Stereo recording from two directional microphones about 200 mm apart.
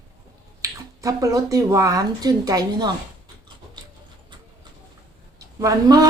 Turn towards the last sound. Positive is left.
turn(degrees=-15)  # may be behind; listen again after turning